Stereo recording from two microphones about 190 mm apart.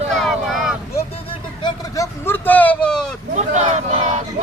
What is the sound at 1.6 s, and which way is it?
Vehicle, 15° left (ahead or behind).